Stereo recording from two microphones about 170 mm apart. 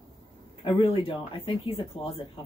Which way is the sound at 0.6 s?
30° left (ahead or behind).